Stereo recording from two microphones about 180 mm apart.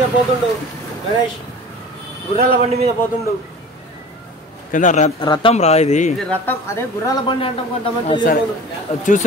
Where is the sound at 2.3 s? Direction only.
55° right (ahead or behind).